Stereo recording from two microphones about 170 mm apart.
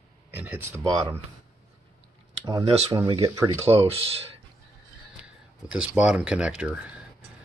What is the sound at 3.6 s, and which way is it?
Speech, 35° right (ahead or behind).